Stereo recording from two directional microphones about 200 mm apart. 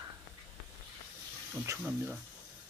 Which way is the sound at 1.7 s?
10° right (ahead or behind).